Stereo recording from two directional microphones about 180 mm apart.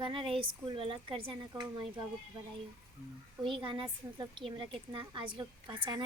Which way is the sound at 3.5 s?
25° right (ahead or behind).